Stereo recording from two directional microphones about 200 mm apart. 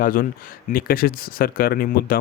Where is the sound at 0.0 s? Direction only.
45° left (ahead or behind).